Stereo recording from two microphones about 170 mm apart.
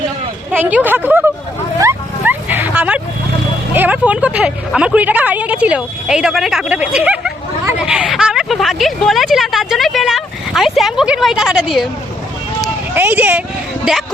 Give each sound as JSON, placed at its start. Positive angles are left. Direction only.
{"t": 0.5, "sound": "speech", "side_deg": -10}
{"t": 1.8, "sound": "a sound", "side_deg": -15}
{"t": 3.8, "sound": "a woman's voice", "side_deg": -10}
{"t": 12.9, "sound": "speech", "side_deg": -10}